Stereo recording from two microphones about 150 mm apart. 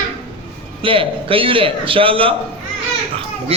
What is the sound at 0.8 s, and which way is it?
A man's voice, 35° right (ahead or behind).